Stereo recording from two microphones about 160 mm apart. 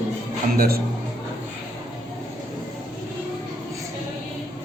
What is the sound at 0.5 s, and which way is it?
Speech, 65° right (ahead or behind).